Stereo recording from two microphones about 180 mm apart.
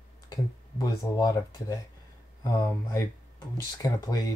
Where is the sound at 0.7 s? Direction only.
20° left (ahead or behind).